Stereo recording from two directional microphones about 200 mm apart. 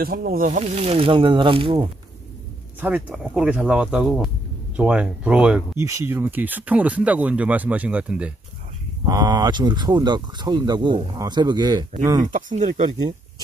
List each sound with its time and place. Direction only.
0.0 s speech: 50° right (ahead or behind); by 1.9 s 25° right (ahead or behind)
2.8 s speech: 5° right (ahead or behind)
9.0 s speech: 20° right (ahead or behind)
12.3 s speech: 40° right (ahead or behind)